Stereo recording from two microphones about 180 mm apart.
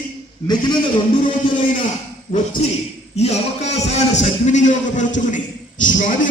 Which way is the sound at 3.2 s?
35° left (ahead or behind).